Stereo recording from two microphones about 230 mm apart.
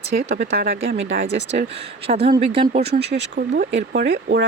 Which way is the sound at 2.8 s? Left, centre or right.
Right.